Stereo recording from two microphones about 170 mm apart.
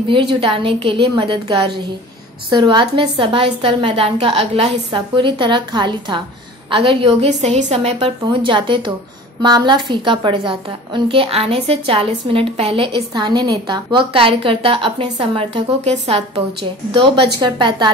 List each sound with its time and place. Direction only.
0.1 s a woman's voice: 30° right (ahead or behind)